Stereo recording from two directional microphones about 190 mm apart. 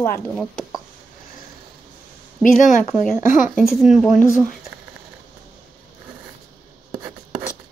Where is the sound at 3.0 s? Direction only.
Centre (ahead or behind).